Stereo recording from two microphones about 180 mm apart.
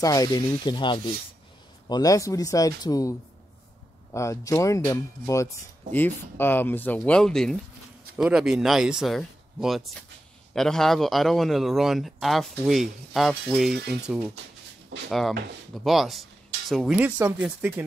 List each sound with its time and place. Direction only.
0.0 s a man's voice: 20° left (ahead or behind); by 17.8 s 10° right (ahead or behind)